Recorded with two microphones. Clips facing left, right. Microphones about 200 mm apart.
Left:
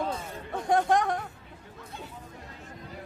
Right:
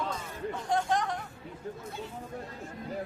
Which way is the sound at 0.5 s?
55° left (ahead or behind).